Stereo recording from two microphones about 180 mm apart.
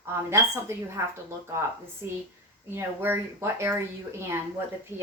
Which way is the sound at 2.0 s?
15° right (ahead or behind).